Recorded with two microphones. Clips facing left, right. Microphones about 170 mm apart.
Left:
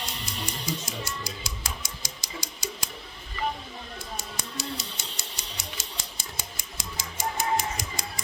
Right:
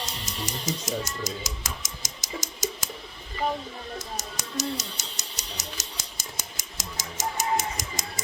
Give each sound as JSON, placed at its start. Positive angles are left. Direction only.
{"t": 0.0, "sound": "music", "side_deg": -45}
{"t": 4.5, "sound": "a sound", "side_deg": -45}
{"t": 7.8, "sound": "music", "side_deg": -45}